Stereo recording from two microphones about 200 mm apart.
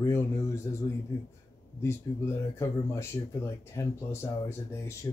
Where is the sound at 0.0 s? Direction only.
15° left (ahead or behind).